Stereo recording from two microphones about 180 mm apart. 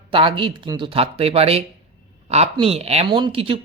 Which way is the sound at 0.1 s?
30° right (ahead or behind).